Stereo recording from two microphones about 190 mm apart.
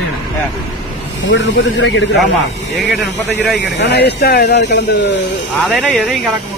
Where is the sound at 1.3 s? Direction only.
75° left (ahead or behind).